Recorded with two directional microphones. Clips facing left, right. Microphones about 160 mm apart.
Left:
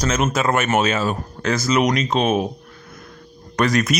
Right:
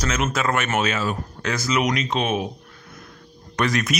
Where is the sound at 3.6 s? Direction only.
40° left (ahead or behind).